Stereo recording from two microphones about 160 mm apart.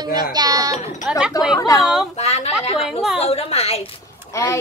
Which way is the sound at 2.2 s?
40° left (ahead or behind).